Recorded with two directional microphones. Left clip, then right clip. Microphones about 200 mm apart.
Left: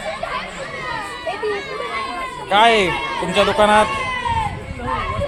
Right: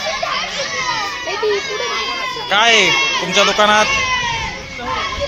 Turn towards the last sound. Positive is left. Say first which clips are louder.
# right 2 dB
turn(degrees=10)  # may be behind; listen again after turning